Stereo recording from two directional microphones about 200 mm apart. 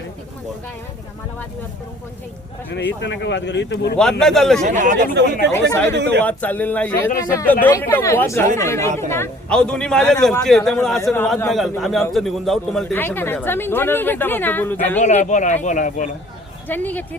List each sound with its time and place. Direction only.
2.7 s speech: 60° left (ahead or behind)
4.2 s a man's voice: centre (ahead or behind)
4.6 s speech: 40° right (ahead or behind)
5.5 s speech: 10° left (ahead or behind)
5.9 s speech: 60° right (ahead or behind)
6.2 s a man's voice: 10° left (ahead or behind)
15.0 s speech: 35° left (ahead or behind)
16.6 s speech: 10° left (ahead or behind)